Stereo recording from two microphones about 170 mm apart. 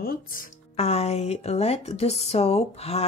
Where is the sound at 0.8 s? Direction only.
40° left (ahead or behind).